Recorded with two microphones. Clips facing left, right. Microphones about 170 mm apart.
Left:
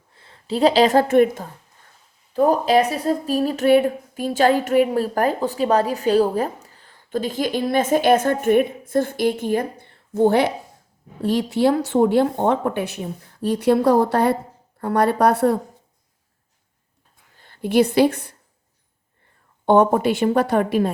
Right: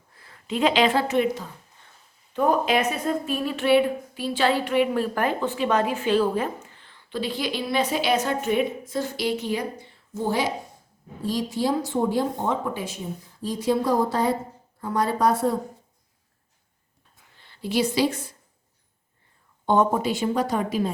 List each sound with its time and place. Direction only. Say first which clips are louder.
0.1 s a woman's voice: left 4 dB; 25° left (ahead or behind); by 1.5 s 50° left (ahead or behind)
2.3 s a woman's voice: left 5 dB; 35° left (ahead or behind); by 15.5 s 65° left (ahead or behind)
17.3 s a woman's voice: left 8 dB; 50° left (ahead or behind)
19.6 s speech: left 6 dB; 60° left (ahead or behind)